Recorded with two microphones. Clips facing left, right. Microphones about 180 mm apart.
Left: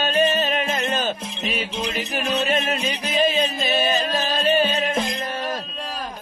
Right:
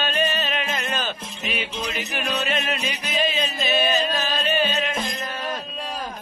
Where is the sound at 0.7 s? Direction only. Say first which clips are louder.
Left 4 dB; 30° left (ahead or behind).